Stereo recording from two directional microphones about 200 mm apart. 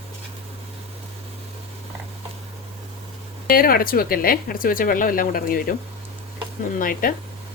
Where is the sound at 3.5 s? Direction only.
45° left (ahead or behind).